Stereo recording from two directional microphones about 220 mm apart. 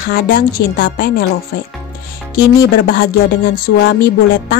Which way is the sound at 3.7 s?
55° left (ahead or behind).